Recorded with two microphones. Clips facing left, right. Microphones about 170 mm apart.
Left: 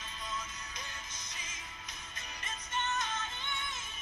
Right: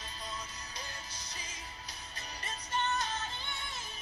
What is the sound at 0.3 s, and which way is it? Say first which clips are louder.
Music: left 4 dB; 35° right (ahead or behind).